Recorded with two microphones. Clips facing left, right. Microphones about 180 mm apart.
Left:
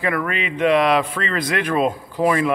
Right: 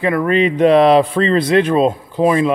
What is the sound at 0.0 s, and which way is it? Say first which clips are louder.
Speech: right 8 dB; 25° right (ahead or behind).